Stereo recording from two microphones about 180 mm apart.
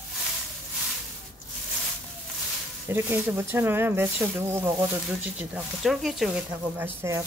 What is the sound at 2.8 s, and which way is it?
Speech, 10° right (ahead or behind).